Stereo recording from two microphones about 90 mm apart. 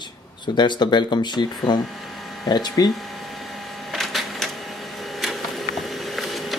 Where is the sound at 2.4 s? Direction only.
50° left (ahead or behind).